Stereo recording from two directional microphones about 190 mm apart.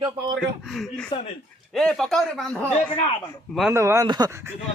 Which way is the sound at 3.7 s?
15° right (ahead or behind).